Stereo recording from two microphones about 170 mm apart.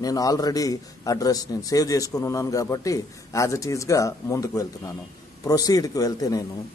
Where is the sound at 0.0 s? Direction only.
20° left (ahead or behind).